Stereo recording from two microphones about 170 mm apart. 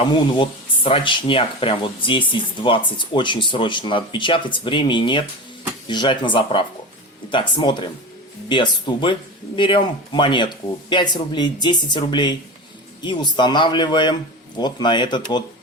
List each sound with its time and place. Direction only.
0.0 s speech: 30° left (ahead or behind)